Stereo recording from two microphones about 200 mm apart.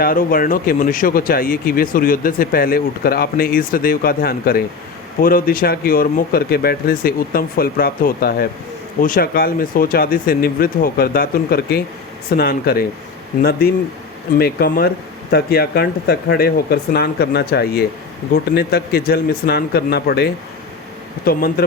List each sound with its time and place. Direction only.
0.0 s speech: 45° left (ahead or behind)